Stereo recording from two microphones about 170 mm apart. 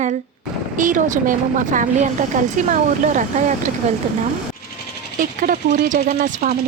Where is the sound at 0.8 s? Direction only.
50° right (ahead or behind).